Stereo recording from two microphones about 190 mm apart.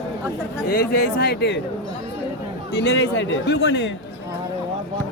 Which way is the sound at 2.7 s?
65° left (ahead or behind).